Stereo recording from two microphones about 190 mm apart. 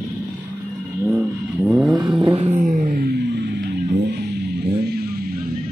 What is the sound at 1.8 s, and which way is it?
Vehicle, 25° right (ahead or behind).